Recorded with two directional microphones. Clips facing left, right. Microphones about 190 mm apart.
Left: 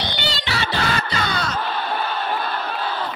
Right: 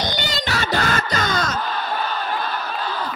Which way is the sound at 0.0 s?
45° right (ahead or behind).